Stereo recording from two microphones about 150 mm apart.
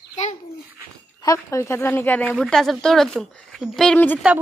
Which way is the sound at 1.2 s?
20° left (ahead or behind).